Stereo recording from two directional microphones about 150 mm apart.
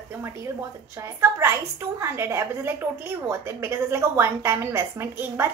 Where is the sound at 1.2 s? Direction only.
15° right (ahead or behind).